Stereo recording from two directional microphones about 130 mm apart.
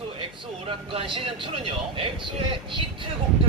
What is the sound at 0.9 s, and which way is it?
Speech, 45° right (ahead or behind).